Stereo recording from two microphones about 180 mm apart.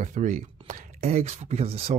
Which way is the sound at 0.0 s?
45° right (ahead or behind).